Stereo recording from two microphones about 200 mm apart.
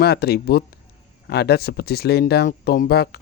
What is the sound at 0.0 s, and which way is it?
Speech, 55° left (ahead or behind).